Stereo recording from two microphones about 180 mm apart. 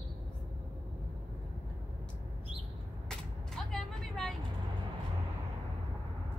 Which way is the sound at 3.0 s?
Centre (ahead or behind).